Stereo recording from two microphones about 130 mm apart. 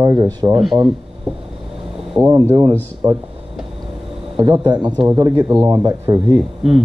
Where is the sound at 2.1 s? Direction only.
20° right (ahead or behind).